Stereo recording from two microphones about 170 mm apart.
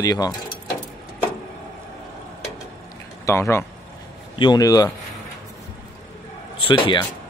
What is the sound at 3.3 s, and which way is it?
Speech, 15° left (ahead or behind).